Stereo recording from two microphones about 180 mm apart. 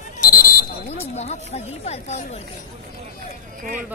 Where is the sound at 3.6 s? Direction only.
45° right (ahead or behind).